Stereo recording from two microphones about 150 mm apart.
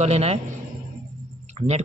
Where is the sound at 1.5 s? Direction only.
45° right (ahead or behind).